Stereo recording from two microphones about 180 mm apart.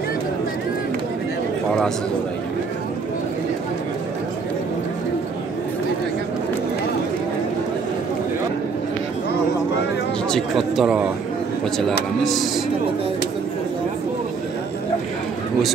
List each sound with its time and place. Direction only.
10.3 s speech: centre (ahead or behind)
12.2 s speech: centre (ahead or behind)